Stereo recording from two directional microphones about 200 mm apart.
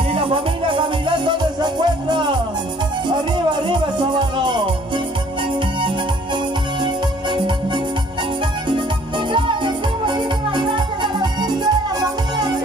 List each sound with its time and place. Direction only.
0.1 s music: 30° right (ahead or behind)
9.3 s music: 25° right (ahead or behind)